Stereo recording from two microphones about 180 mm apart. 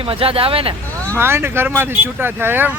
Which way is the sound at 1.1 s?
15° right (ahead or behind).